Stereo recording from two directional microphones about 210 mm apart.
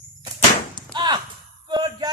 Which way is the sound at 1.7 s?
20° right (ahead or behind).